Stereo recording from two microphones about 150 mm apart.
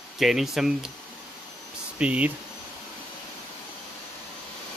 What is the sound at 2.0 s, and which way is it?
Speech, 10° right (ahead or behind).